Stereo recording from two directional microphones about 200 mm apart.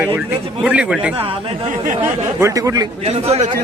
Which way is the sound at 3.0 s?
30° right (ahead or behind).